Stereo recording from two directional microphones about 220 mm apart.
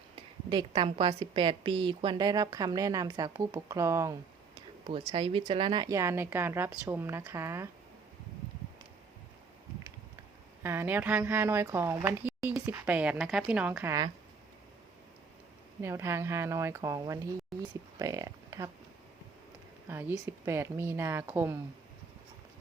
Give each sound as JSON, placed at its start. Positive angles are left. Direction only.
{"t": 0.5, "sound": "a woman's voice", "side_deg": -25}
{"t": 4.9, "sound": "a woman's voice", "side_deg": -25}
{"t": 10.6, "sound": "a woman's voice", "side_deg": -10}
{"t": 15.8, "sound": "a woman's voice", "side_deg": -10}
{"t": 19.9, "sound": "a woman's voice", "side_deg": -10}